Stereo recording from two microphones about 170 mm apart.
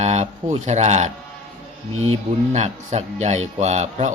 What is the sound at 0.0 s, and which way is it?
Speech, 40° right (ahead or behind).